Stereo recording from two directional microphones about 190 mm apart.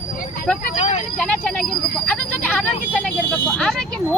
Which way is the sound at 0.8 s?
35° left (ahead or behind).